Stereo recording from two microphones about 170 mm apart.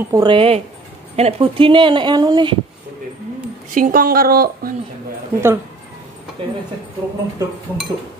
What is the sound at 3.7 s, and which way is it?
Speech, 55° right (ahead or behind).